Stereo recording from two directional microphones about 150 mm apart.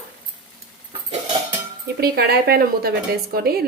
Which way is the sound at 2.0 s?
90° right.